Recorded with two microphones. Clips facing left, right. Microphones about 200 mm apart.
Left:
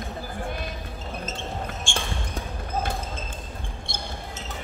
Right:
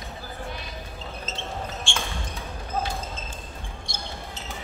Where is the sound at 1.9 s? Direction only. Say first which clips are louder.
Left 1 dB; 45° left (ahead or behind).